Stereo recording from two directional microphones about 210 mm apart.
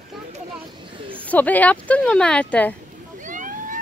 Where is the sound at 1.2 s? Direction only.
5° left (ahead or behind).